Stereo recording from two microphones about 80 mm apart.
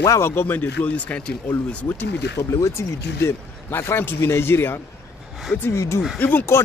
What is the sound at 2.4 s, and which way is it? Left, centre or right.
Speech, left.